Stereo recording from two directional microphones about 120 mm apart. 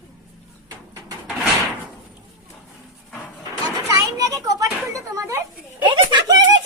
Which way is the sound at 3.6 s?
30° right (ahead or behind).